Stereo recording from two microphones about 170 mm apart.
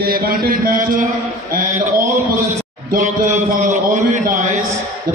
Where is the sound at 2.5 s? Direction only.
40° right (ahead or behind).